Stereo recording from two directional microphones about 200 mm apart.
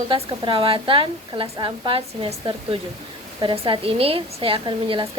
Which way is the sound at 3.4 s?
25° right (ahead or behind).